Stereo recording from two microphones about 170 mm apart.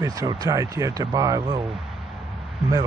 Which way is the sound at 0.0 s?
20° right (ahead or behind).